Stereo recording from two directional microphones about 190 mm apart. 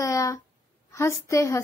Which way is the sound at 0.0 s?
15° left (ahead or behind).